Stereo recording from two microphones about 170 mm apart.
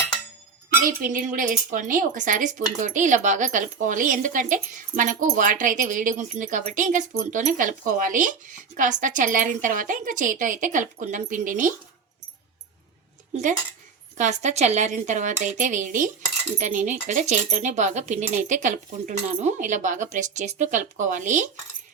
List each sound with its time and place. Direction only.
0.8 s speech: 55° right (ahead or behind)
13.3 s speech: 50° right (ahead or behind)